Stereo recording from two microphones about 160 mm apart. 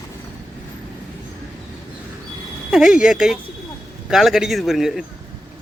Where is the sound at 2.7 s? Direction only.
5° right (ahead or behind).